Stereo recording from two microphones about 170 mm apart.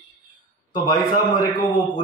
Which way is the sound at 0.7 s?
25° left (ahead or behind).